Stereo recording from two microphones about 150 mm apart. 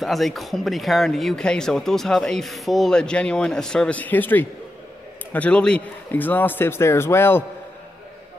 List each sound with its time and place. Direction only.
0.0 s a man's voice: centre (ahead or behind)